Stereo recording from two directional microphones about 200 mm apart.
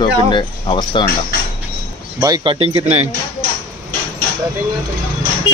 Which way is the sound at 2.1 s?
20° right (ahead or behind).